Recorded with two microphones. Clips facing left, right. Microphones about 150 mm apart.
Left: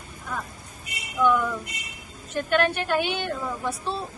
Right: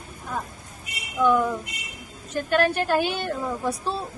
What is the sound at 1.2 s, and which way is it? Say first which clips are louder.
A woman's voice: right 2 dB; 35° right (ahead or behind).